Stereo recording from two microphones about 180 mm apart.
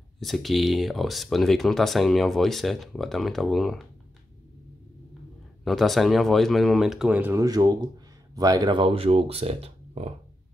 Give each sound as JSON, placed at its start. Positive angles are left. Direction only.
{"t": 0.2, "sound": "speech", "side_deg": 0}
{"t": 5.6, "sound": "speech", "side_deg": 0}